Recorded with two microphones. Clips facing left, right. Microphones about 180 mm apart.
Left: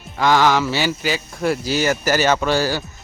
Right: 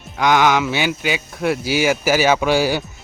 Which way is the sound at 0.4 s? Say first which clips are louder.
Even; centre (ahead or behind).